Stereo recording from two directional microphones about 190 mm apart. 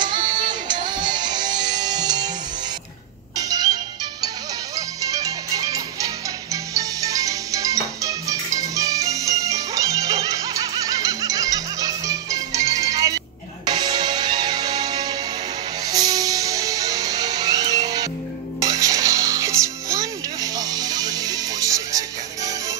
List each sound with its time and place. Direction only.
0.0 s music: 25° right (ahead or behind)
3.3 s music: 20° right (ahead or behind)